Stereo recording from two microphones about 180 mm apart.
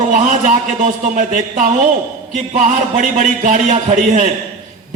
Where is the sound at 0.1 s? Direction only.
45° right (ahead or behind).